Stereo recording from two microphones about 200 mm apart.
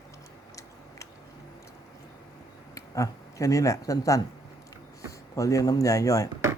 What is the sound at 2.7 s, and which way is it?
Speech, 15° left (ahead or behind).